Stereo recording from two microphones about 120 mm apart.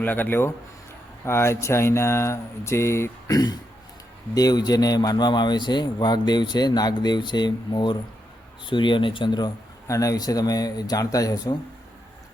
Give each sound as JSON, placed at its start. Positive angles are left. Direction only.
{"t": 0.0, "sound": "a man's voice", "side_deg": 15}